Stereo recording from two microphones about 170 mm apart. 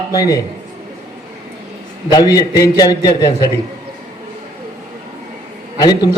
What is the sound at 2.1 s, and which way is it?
A man's voice, 20° left (ahead or behind).